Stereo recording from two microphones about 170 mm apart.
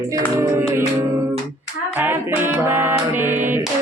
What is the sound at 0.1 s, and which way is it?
Music, 15° right (ahead or behind).